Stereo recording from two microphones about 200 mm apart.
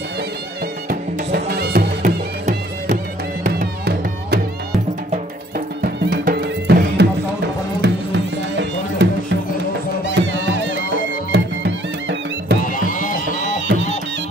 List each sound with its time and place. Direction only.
0.8 s music: 50° right (ahead or behind)
3.4 s music: 55° right (ahead or behind)
5.8 s music: 45° right (ahead or behind)
12.6 s run: 45° left (ahead or behind)